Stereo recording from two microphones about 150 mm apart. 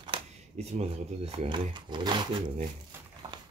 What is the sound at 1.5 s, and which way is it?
Speech, 30° right (ahead or behind).